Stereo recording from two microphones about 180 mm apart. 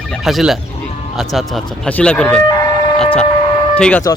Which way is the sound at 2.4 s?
20° left (ahead or behind).